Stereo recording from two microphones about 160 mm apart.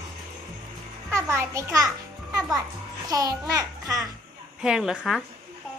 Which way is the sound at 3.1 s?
20° right (ahead or behind).